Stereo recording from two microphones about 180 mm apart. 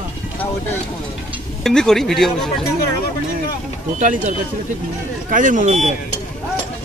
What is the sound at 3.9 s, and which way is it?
Speech, 40° right (ahead or behind).